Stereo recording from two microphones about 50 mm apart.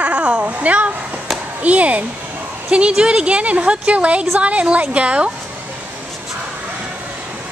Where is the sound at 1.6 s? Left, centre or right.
Right.